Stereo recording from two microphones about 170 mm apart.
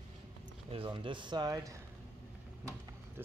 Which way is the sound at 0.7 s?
30° right (ahead or behind).